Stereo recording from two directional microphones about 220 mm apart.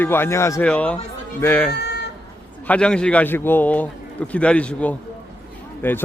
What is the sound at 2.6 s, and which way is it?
A man's voice, 5° left (ahead or behind).